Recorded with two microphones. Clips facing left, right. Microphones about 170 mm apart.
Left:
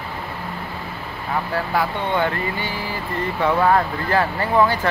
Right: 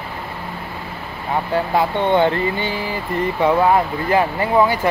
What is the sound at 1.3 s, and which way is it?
Speech, 25° right (ahead or behind).